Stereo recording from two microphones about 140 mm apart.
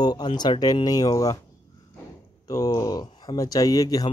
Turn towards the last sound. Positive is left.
turn(degrees=25)  # may be behind; listen again after turning